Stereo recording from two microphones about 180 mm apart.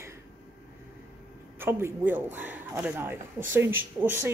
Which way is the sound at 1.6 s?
15° right (ahead or behind).